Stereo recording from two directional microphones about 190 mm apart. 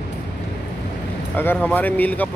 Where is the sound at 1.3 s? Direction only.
10° left (ahead or behind).